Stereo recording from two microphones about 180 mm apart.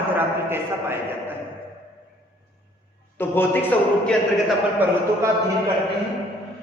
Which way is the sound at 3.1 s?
10° left (ahead or behind).